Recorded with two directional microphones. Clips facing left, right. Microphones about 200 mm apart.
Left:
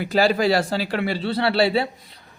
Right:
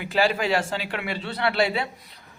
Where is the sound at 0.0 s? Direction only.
40° left (ahead or behind).